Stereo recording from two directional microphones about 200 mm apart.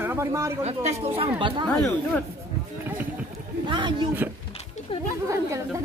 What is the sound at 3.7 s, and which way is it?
Speech, 25° right (ahead or behind).